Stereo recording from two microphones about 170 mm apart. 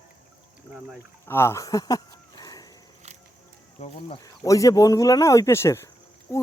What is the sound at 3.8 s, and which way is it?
Speech, 40° left (ahead or behind).